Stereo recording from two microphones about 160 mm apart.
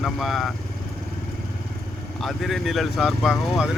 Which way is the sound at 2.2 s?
Centre (ahead or behind).